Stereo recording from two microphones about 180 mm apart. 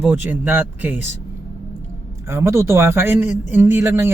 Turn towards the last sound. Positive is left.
turn(degrees=-15)  # may be behind; listen again after turning